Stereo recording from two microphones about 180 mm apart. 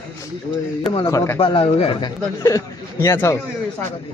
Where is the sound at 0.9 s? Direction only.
20° left (ahead or behind).